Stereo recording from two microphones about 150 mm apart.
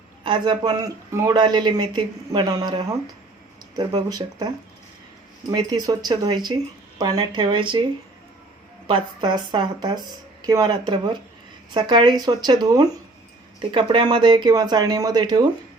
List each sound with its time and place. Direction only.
0.3 s speech: 30° right (ahead or behind)
8.9 s speech: 30° right (ahead or behind)